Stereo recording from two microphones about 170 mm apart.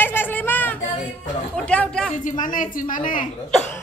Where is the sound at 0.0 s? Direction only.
10° left (ahead or behind).